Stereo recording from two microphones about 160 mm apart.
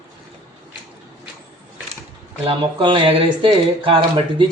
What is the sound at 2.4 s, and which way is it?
Speech, 30° right (ahead or behind).